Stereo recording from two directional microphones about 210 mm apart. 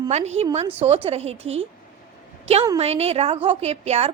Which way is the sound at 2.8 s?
30° right (ahead or behind).